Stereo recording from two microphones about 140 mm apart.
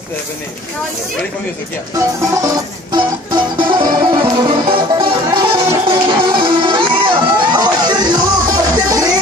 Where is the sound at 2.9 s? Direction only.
35° right (ahead or behind).